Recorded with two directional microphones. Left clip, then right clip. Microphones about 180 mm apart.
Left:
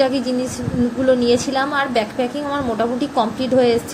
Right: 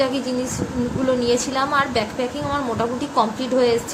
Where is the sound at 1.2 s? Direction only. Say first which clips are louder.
Left 3 dB; 10° left (ahead or behind).